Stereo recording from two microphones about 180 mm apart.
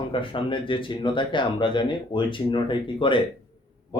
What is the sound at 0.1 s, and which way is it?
Speech, 30° left (ahead or behind).